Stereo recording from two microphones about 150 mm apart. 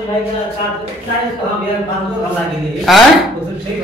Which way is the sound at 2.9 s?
Centre (ahead or behind).